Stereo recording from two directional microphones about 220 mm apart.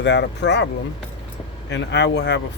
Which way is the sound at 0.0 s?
50° left (ahead or behind).